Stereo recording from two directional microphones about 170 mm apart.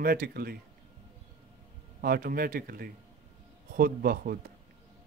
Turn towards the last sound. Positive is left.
turn(degrees=-60)  # may be behind; listen again after turning